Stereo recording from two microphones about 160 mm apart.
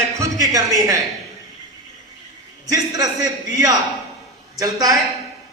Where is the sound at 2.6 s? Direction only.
20° right (ahead or behind).